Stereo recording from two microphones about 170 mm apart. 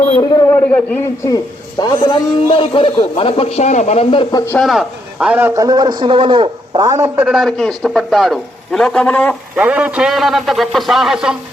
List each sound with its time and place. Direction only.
0.2 s speech: 20° left (ahead or behind)
1.8 s a man's voice: 25° left (ahead or behind)
4.5 s a man's voice: centre (ahead or behind); by 6.8 s 30° right (ahead or behind)
7.3 s a man's voice: centre (ahead or behind)
9.6 s a man's voice: 10° right (ahead or behind)